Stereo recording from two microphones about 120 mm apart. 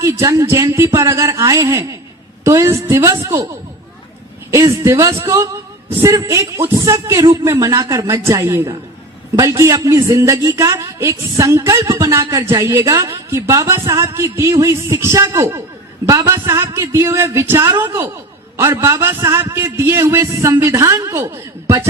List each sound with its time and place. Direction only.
0.0 s a man's voice: 25° right (ahead or behind)
4.5 s a man's voice: 25° right (ahead or behind)